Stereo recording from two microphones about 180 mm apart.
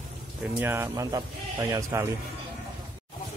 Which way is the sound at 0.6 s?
15° right (ahead or behind).